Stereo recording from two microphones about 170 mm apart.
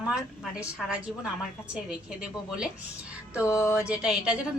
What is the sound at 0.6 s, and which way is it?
Speech, 5° right (ahead or behind).